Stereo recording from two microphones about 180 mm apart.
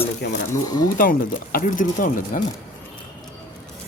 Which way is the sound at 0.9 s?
50° left (ahead or behind).